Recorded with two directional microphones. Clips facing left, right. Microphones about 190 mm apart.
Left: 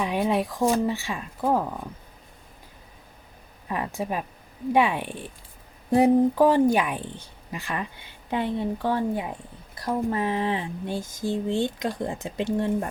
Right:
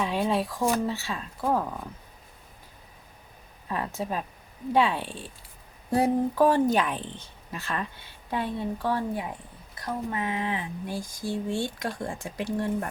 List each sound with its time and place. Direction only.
0.0 s speech: 15° left (ahead or behind)
3.7 s speech: 15° left (ahead or behind)
9.8 s speech: 35° left (ahead or behind)